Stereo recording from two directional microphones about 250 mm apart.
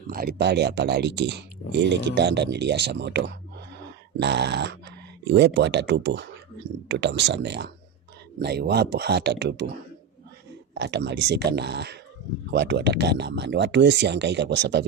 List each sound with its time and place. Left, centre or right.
0.1 s speech: right
10.8 s speech: right